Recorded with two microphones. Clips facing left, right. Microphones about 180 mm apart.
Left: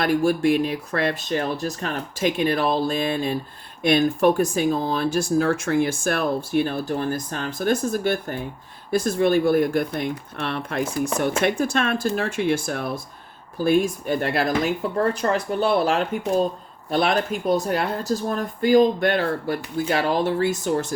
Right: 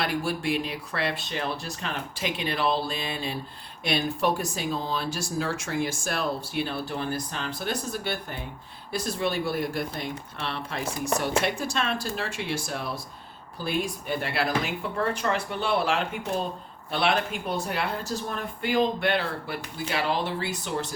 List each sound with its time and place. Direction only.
0.0 s speech: 45° left (ahead or behind)